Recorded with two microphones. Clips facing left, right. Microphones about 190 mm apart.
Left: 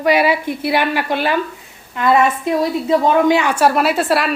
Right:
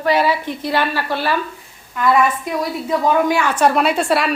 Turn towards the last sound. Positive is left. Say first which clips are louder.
# left 1 dB
turn(degrees=0)  # may be behind; listen again after turning